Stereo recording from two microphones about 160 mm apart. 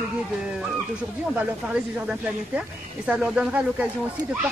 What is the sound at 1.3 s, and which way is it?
Speech, 10° right (ahead or behind).